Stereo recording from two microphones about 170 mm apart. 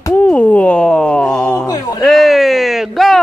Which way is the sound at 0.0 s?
10° left (ahead or behind).